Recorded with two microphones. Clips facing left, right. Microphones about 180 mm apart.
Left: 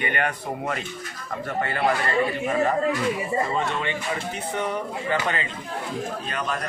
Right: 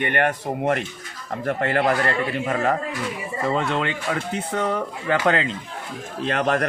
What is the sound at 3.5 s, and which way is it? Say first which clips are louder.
Speech: right 3 dB; 90° right.